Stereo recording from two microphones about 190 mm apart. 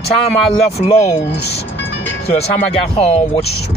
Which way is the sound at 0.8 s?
30° left (ahead or behind).